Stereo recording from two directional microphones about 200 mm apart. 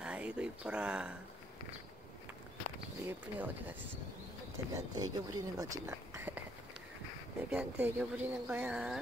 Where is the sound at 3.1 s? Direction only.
10° right (ahead or behind).